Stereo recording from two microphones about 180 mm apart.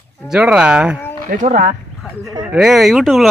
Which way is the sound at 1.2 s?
50° right (ahead or behind).